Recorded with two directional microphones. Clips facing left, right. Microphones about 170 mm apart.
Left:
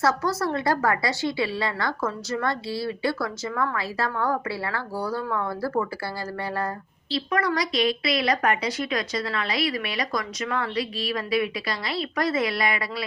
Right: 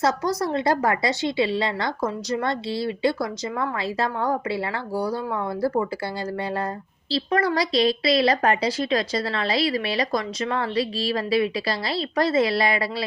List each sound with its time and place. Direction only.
0.0 s a woman's voice: 20° right (ahead or behind)
7.1 s a woman's voice: 30° right (ahead or behind)